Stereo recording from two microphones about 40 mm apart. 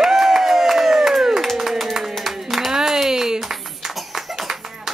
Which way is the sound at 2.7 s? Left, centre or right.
Centre.